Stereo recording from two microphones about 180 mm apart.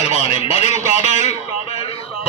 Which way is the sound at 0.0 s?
35° left (ahead or behind).